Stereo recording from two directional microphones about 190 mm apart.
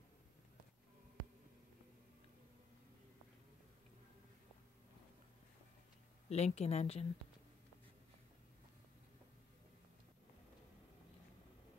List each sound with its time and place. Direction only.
6.2 s a woman's voice: 35° left (ahead or behind)